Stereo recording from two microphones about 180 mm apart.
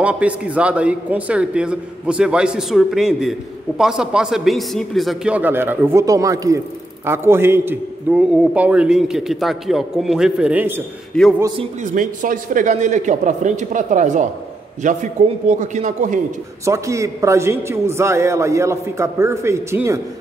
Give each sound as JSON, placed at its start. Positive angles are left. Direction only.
{"t": 0.0, "sound": "a man's voice", "side_deg": -5}
{"t": 11.1, "sound": "a man's voice", "side_deg": 5}
{"t": 11.8, "sound": "speech", "side_deg": -45}
{"t": 16.6, "sound": "a man's voice", "side_deg": -15}